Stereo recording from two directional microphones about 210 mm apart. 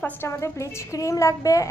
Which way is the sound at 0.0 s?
10° left (ahead or behind).